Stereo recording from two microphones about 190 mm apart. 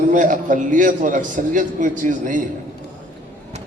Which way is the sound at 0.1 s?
45° right (ahead or behind).